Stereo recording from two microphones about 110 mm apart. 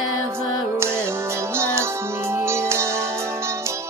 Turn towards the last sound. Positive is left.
turn(degrees=-25)  # may be behind; listen again after turning